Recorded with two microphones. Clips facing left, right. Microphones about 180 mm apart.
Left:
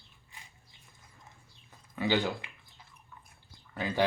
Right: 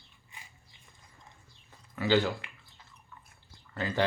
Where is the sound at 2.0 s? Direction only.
15° left (ahead or behind).